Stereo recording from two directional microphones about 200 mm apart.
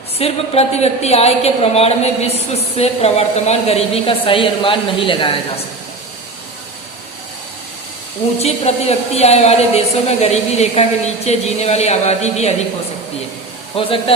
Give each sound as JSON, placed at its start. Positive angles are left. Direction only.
{"t": 0.2, "sound": "a woman's voice", "side_deg": 30}
{"t": 8.4, "sound": "a woman's voice", "side_deg": 30}
{"t": 13.7, "sound": "speech", "side_deg": 25}